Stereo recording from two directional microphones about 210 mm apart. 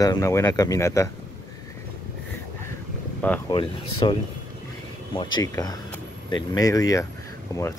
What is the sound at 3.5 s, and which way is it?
Speech, 25° left (ahead or behind).